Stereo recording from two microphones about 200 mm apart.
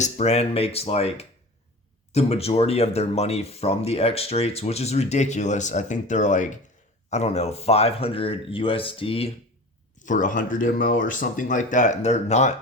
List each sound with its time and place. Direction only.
0.0 s speech: 35° left (ahead or behind)
10.0 s speech: 40° left (ahead or behind)